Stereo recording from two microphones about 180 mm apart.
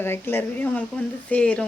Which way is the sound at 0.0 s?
10° left (ahead or behind).